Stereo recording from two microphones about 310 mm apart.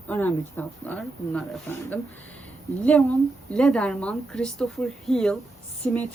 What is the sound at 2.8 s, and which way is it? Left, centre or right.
A woman's voice, centre.